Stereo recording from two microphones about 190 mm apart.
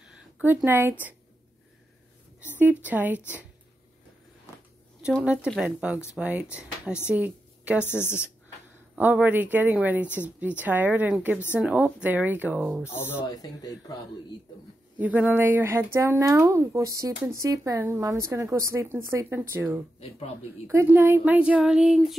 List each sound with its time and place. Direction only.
0.0 s speech: 5° right (ahead or behind)
2.6 s speech: 10° right (ahead or behind)
5.2 s a woman's voice: 5° right (ahead or behind)
7.8 s a woman's voice: 10° left (ahead or behind)
8.9 s speech: 10° right (ahead or behind)
11.3 s a woman's voice: 10° left (ahead or behind)
11.6 s speech: 5° right (ahead or behind)
12.9 s a woman's voice: 10° left (ahead or behind)
15.0 s speech: 10° right (ahead or behind)